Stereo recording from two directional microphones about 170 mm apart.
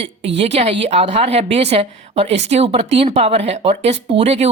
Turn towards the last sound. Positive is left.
turn(degrees=-35)  # may be behind; listen again after turning